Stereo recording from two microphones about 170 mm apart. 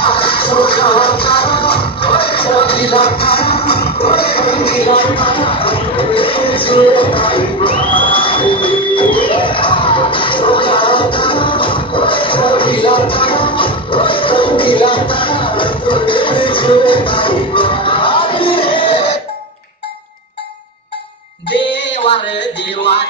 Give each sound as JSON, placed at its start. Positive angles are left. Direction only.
{"t": 0.0, "sound": "music", "side_deg": 30}
{"t": 21.5, "sound": "music", "side_deg": 90}